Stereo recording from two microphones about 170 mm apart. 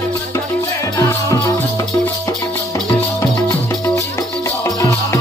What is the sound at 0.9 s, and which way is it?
Music, 20° left (ahead or behind).